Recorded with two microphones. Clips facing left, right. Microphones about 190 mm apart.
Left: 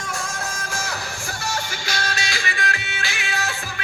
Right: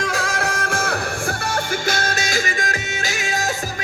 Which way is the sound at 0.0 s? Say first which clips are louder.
Right 7 dB; 90° right.